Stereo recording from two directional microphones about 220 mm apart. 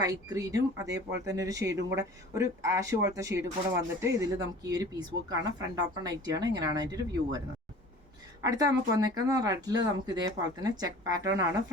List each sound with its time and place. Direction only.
0.0 s speech: 15° right (ahead or behind)